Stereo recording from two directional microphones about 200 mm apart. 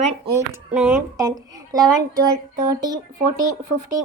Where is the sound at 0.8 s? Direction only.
5° right (ahead or behind).